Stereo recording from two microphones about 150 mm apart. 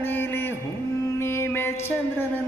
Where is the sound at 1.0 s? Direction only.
15° left (ahead or behind).